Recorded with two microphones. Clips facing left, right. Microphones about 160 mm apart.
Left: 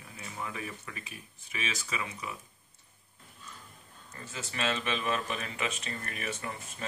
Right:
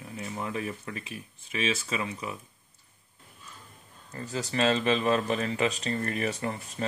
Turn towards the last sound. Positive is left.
turn(degrees=-35)  # may be behind; listen again after turning